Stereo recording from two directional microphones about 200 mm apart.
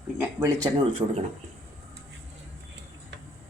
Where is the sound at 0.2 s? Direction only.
10° right (ahead or behind).